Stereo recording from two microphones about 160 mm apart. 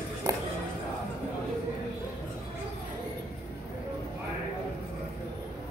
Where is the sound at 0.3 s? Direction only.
25° right (ahead or behind).